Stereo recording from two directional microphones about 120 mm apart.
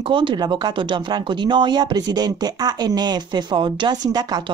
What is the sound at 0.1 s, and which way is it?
Speech, 40° right (ahead or behind).